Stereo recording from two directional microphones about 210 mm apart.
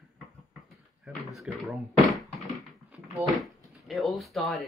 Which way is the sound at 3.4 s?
Centre (ahead or behind).